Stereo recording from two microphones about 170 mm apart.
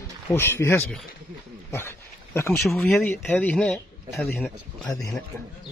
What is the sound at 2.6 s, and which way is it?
Speech, centre (ahead or behind).